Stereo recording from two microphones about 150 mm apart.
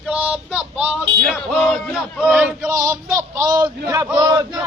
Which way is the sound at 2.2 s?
10° right (ahead or behind).